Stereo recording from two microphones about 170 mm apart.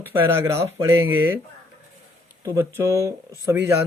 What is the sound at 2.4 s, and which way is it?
Speech, 20° right (ahead or behind).